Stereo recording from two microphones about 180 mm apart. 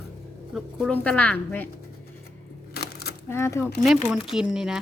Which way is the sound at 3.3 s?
15° left (ahead or behind).